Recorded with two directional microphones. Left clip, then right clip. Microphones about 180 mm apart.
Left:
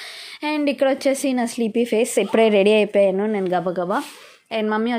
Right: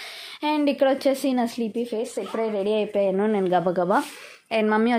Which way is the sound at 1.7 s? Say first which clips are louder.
Left 9 dB; 35° left (ahead or behind).